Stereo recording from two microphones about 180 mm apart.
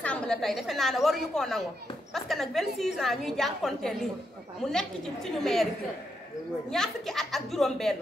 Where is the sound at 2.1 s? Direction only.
Centre (ahead or behind).